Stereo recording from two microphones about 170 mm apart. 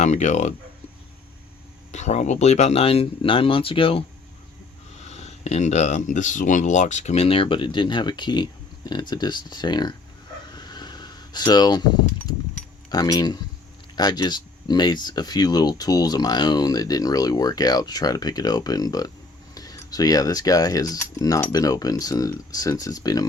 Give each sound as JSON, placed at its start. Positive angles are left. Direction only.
{"t": 0.0, "sound": "speech", "side_deg": 45}
{"t": 1.9, "sound": "speech", "side_deg": 40}
{"t": 5.0, "sound": "speech", "side_deg": 40}
{"t": 10.5, "sound": "a sound", "side_deg": 25}
{"t": 12.9, "sound": "speech", "side_deg": 25}